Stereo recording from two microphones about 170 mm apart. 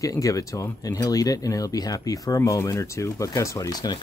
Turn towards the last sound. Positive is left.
turn(degrees=25)  # may be behind; listen again after turning